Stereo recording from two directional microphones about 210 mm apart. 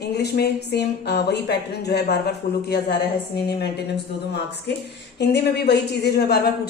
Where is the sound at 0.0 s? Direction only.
50° left (ahead or behind).